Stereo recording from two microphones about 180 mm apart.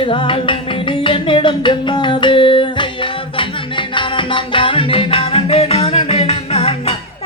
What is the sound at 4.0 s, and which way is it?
Music, 30° left (ahead or behind).